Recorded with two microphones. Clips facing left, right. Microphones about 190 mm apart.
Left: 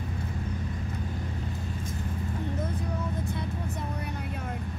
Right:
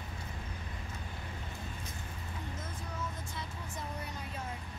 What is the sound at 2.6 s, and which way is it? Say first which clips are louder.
Vehicle: left 9 dB; 60° left (ahead or behind).